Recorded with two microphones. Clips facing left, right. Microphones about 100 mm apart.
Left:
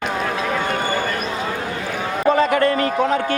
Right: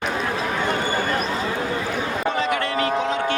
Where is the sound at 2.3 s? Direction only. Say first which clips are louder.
Left 9 dB; 40° left (ahead or behind).